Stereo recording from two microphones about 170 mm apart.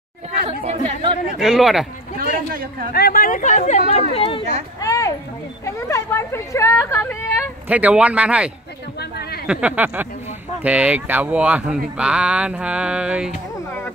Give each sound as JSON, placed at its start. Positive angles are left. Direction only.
{"t": 0.7, "sound": "speech", "side_deg": -40}
{"t": 1.4, "sound": "speech", "side_deg": 0}
{"t": 2.1, "sound": "a sound", "side_deg": -55}
{"t": 2.9, "sound": "speech", "side_deg": 60}
{"t": 3.9, "sound": "speech", "side_deg": 35}
{"t": 4.7, "sound": "clip-clop", "side_deg": 20}
{"t": 5.9, "sound": "speech", "side_deg": 15}
{"t": 7.6, "sound": "speech", "side_deg": -10}
{"t": 9.5, "sound": "speech", "side_deg": -5}